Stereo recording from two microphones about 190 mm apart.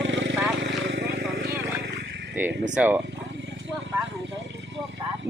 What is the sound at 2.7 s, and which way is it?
Speech, 10° right (ahead or behind).